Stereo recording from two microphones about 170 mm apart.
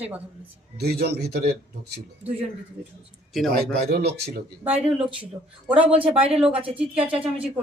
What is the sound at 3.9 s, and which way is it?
Speech, 75° right (ahead or behind).